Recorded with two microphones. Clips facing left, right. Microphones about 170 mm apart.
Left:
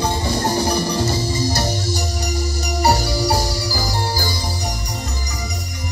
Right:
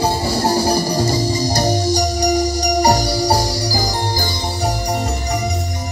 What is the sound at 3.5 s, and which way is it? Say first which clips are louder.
Music: right 3 dB; 40° right (ahead or behind).